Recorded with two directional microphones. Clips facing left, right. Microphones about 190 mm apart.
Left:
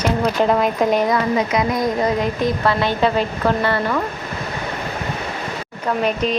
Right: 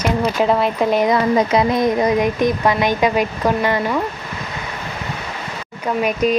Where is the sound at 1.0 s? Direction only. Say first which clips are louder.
Right 3 dB; 30° right (ahead or behind).